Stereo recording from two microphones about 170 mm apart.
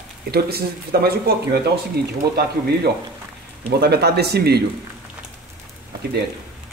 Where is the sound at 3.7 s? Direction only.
70° right (ahead or behind).